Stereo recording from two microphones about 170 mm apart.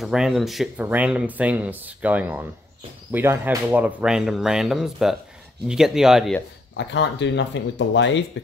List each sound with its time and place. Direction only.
0.0 s speech: centre (ahead or behind)
6.8 s speech: 90° left